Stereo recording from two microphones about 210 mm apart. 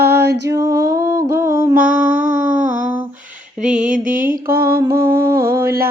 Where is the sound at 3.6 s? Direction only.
35° right (ahead or behind).